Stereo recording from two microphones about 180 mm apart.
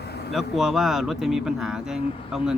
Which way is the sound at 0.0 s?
65° left (ahead or behind).